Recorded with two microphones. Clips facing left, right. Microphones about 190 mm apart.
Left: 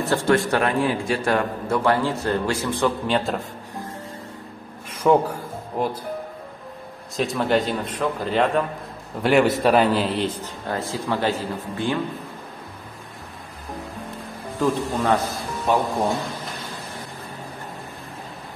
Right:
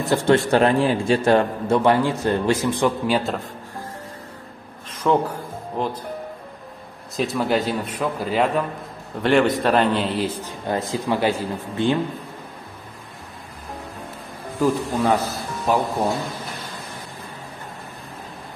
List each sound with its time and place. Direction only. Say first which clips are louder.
0.0 s a man's voice: right 2 dB; 20° right (ahead or behind)
5.0 s music: left 2 dB; 10° left (ahead or behind)
7.2 s a man's voice: even; centre (ahead or behind)
9.2 s a man's voice: even; 5° left (ahead or behind)
10.4 s speech: right 3 dB; 20° right (ahead or behind)
14.6 s a man's voice: right 2 dB; 10° right (ahead or behind)